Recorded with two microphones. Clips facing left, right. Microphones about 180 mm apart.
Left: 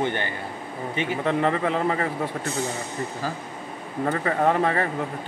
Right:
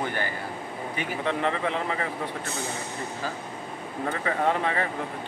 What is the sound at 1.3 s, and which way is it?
Speech, 40° left (ahead or behind).